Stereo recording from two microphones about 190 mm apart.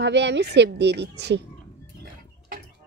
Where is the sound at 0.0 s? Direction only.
65° right (ahead or behind).